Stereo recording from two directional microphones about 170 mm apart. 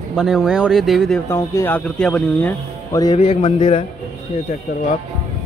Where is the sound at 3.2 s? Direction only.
40° left (ahead or behind).